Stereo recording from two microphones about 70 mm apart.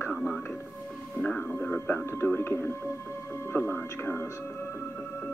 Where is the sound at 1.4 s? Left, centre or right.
Left.